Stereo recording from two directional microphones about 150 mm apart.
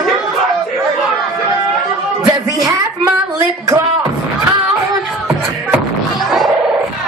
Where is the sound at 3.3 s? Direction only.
15° right (ahead or behind).